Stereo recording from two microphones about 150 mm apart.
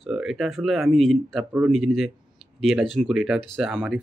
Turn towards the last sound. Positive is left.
turn(degrees=-10)  # may be behind; listen again after turning